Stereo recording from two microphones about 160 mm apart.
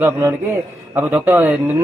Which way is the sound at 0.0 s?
15° right (ahead or behind).